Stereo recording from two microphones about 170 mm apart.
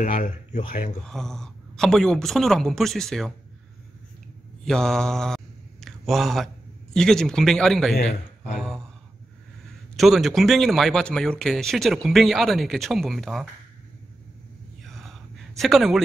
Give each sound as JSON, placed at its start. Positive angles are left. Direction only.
{"t": 0.0, "sound": "speech", "side_deg": 50}
{"t": 1.0, "sound": "speech", "side_deg": 5}
{"t": 4.6, "sound": "speech", "side_deg": 5}
{"t": 8.5, "sound": "a sound", "side_deg": 0}
{"t": 9.9, "sound": "speech", "side_deg": 0}
{"t": 14.8, "sound": "a sound", "side_deg": 0}